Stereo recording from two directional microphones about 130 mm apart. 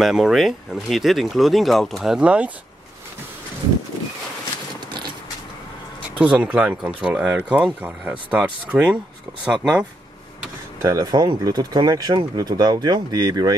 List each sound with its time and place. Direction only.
0.0 s speech: centre (ahead or behind)
4.7 s a sound: 35° right (ahead or behind)
6.1 s speech: 10° right (ahead or behind)
10.8 s speech: 25° right (ahead or behind)